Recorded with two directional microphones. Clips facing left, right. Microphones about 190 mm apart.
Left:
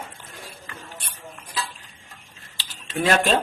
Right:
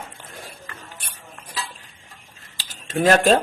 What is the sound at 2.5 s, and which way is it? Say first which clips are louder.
Cutlery: right 4 dB; 45° right (ahead or behind).